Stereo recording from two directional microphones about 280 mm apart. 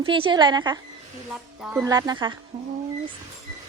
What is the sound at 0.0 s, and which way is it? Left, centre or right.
A woman's voice, centre.